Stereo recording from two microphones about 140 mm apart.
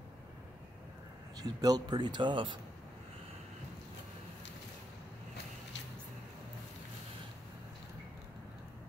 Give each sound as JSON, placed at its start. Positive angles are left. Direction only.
{"t": 1.4, "sound": "speech", "side_deg": -25}